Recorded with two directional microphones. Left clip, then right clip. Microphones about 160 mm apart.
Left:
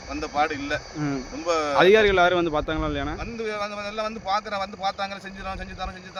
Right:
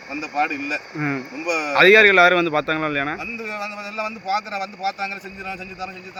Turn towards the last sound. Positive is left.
turn(degrees=10)  # may be behind; listen again after turning